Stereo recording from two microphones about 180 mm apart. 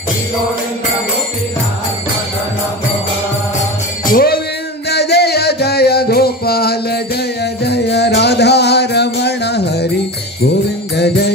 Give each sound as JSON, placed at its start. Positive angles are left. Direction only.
{"t": 4.0, "sound": "music", "side_deg": 55}
{"t": 4.8, "sound": "music", "side_deg": 65}
{"t": 11.0, "sound": "music", "side_deg": 65}